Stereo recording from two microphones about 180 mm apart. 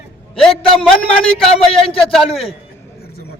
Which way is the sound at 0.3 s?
5° left (ahead or behind).